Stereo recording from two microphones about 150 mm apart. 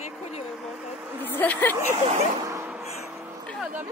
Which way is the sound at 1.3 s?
10° left (ahead or behind).